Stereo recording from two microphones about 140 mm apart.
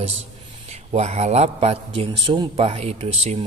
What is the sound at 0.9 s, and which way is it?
A man's voice, 50° right (ahead or behind).